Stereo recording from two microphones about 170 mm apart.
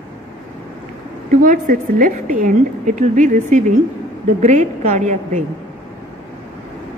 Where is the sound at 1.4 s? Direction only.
50° right (ahead or behind).